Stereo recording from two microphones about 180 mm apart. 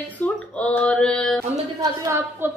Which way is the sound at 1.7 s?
15° right (ahead or behind).